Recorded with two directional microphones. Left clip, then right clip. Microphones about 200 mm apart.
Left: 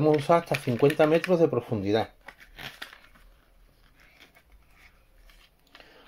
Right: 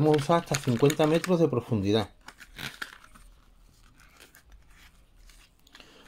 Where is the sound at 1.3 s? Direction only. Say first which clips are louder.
Left 2 dB; 5° right (ahead or behind).